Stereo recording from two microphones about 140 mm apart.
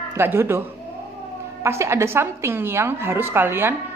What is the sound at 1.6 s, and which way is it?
A woman's voice, 20° right (ahead or behind).